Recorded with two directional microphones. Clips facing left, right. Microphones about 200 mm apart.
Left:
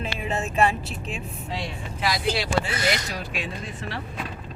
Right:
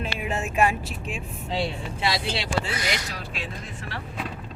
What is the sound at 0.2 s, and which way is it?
Speech, 10° right (ahead or behind).